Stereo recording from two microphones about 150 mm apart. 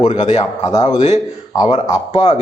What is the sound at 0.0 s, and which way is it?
Speech, 55° left (ahead or behind).